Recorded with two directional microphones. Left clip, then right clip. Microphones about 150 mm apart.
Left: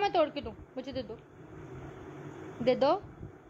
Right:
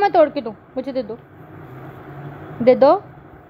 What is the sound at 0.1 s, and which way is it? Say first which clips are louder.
Speech: right 14 dB; 35° right (ahead or behind).